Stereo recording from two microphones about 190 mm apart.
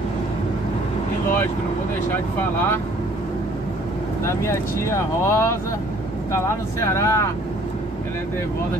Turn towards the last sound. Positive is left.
turn(degrees=15)  # may be behind; listen again after turning